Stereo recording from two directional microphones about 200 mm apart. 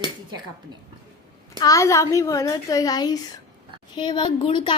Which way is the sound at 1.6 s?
15° left (ahead or behind).